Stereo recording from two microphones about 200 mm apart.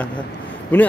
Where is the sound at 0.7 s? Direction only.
10° left (ahead or behind).